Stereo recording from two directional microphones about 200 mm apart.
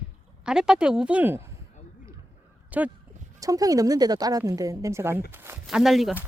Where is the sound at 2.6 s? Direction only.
10° right (ahead or behind).